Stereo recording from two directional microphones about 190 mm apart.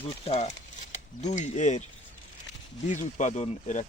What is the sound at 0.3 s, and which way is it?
Speech, 35° left (ahead or behind).